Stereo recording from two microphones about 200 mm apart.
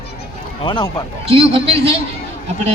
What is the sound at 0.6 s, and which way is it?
Speech, 25° left (ahead or behind).